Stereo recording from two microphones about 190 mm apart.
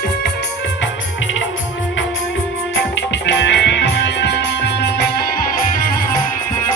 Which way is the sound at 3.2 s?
70° left (ahead or behind).